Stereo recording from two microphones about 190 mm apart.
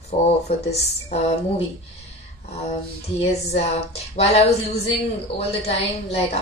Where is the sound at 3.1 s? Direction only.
35° left (ahead or behind).